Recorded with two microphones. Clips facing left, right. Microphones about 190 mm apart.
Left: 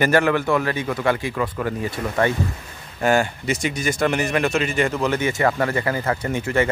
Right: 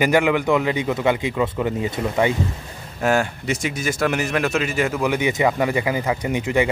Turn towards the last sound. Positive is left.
turn(degrees=-15)  # may be behind; listen again after turning